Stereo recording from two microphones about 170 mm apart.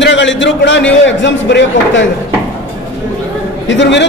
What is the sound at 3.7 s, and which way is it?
Speech, 90° left.